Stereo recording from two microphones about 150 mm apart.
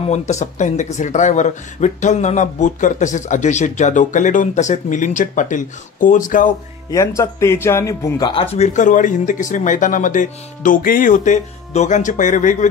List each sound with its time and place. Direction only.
0.0 s speech: 50° left (ahead or behind)
6.9 s speech: 20° left (ahead or behind)
8.3 s speech: 40° left (ahead or behind)